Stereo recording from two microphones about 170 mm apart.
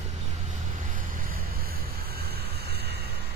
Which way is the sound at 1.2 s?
60° right (ahead or behind).